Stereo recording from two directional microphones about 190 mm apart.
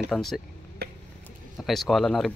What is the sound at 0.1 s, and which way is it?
Speech, centre (ahead or behind).